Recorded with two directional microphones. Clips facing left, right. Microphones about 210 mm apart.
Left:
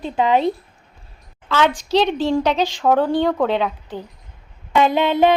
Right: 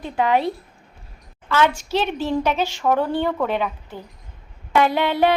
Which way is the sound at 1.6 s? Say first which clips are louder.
Left 4 dB; 15° left (ahead or behind).